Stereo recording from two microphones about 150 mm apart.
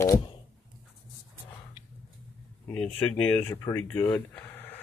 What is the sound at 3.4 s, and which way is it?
Speech, 15° left (ahead or behind).